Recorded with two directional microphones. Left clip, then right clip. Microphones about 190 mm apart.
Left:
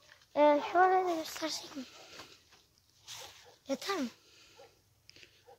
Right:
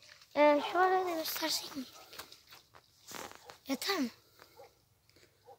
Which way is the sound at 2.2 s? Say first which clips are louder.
Right 4 dB; 35° right (ahead or behind).